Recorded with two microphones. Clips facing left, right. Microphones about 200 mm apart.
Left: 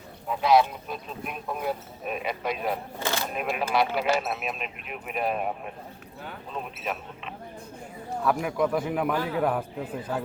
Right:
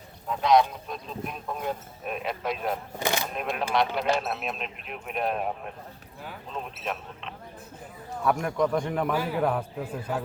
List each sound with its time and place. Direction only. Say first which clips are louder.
0.3 s speech: even; 5° left (ahead or behind)
3.0 s speech: right 4 dB; 15° right (ahead or behind)
3.3 s speech: left 3 dB; 5° left (ahead or behind)
9.1 s a man's voice: even; 10° right (ahead or behind)
9.4 s speech: even; 5° left (ahead or behind)
10.1 s a man's voice: even; 15° right (ahead or behind)